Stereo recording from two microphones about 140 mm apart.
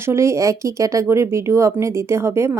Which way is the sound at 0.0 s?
20° right (ahead or behind).